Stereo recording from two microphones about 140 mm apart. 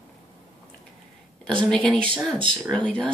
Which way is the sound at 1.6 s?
5° left (ahead or behind).